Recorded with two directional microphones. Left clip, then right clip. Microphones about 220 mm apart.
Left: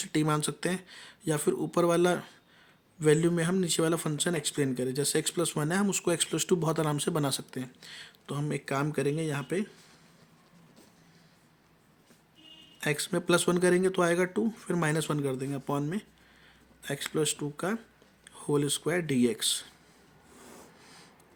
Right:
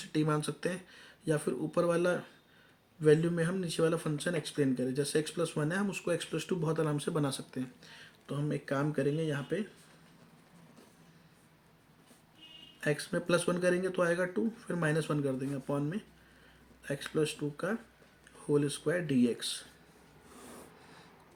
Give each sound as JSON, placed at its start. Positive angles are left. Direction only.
{"t": 0.0, "sound": "a man's voice", "side_deg": 45}
{"t": 12.8, "sound": "a man's voice", "side_deg": 45}